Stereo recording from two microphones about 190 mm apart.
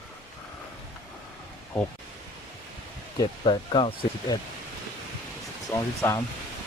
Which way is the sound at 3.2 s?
25° left (ahead or behind).